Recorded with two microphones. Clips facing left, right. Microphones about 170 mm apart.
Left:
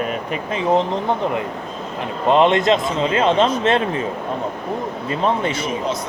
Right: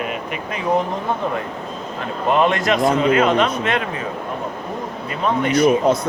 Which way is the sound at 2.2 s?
20° left (ahead or behind).